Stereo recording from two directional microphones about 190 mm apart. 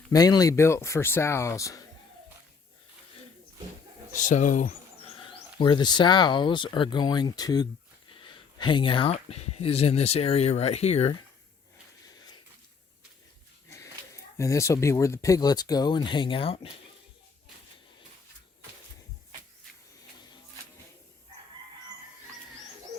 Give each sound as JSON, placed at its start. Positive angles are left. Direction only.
{"t": 0.1, "sound": "speech", "side_deg": 20}
{"t": 4.1, "sound": "speech", "side_deg": 40}
{"t": 5.1, "sound": "speech", "side_deg": 25}
{"t": 12.0, "sound": "dog", "side_deg": 20}
{"t": 14.3, "sound": "speech", "side_deg": 15}